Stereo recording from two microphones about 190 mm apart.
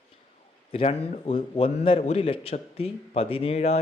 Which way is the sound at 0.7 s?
30° left (ahead or behind).